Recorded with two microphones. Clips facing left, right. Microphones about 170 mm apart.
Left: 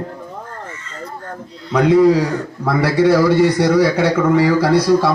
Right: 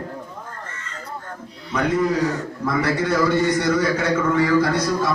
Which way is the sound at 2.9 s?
35° left (ahead or behind).